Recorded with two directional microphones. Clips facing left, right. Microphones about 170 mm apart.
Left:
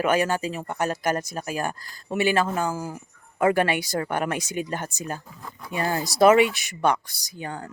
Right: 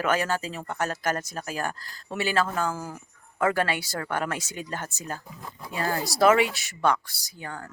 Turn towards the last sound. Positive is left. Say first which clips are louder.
# left 4 dB
turn(degrees=20)  # may be behind; listen again after turning